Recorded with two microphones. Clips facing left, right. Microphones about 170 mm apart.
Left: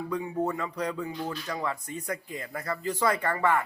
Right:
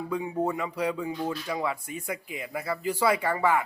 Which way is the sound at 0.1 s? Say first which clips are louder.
Right 2 dB; 10° right (ahead or behind).